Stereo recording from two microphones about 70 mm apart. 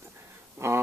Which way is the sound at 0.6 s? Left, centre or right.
Right.